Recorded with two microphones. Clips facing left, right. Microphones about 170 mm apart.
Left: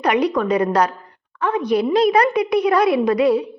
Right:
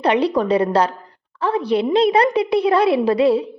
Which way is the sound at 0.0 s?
30° right (ahead or behind).